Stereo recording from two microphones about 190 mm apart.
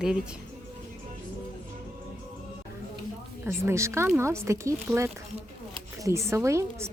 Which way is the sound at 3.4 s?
15° right (ahead or behind).